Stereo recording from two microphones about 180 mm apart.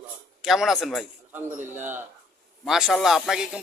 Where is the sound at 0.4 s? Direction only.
Centre (ahead or behind).